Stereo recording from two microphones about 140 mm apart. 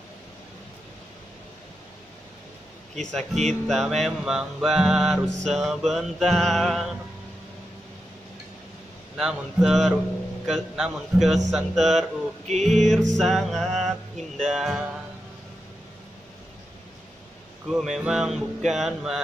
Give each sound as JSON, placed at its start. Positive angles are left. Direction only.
{"t": 3.0, "sound": "music", "side_deg": 5}
{"t": 9.1, "sound": "music", "side_deg": -5}
{"t": 12.4, "sound": "music", "side_deg": -55}
{"t": 12.7, "sound": "music", "side_deg": 0}
{"t": 17.6, "sound": "music", "side_deg": 0}